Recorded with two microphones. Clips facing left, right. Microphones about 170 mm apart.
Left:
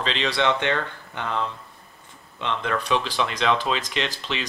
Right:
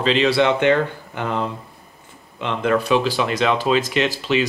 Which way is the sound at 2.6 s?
10° right (ahead or behind).